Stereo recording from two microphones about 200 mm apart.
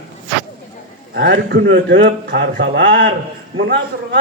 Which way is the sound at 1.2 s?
55° right (ahead or behind).